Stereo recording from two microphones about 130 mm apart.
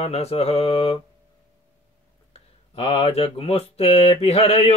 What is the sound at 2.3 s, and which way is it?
Speech, 50° left (ahead or behind).